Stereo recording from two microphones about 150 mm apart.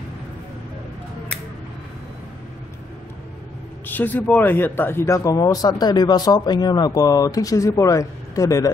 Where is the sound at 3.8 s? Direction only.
10° left (ahead or behind).